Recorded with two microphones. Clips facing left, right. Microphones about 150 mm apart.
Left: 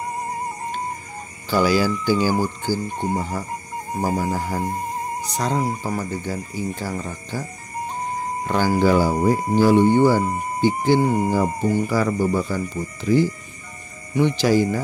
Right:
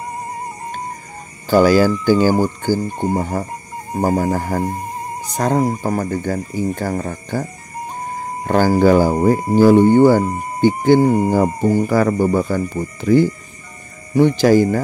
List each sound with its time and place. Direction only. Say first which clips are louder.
1.5 s speech: right 7 dB; 50° right (ahead or behind)
8.5 s speech: right 6 dB; 45° right (ahead or behind)